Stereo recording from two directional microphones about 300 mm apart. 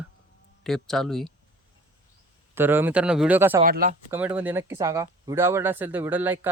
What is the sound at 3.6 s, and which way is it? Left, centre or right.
Speech, right.